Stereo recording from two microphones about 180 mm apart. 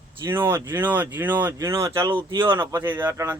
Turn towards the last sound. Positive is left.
turn(degrees=-15)  # may be behind; listen again after turning